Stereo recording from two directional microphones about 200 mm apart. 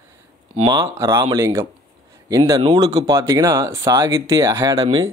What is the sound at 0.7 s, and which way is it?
Speech, 15° right (ahead or behind).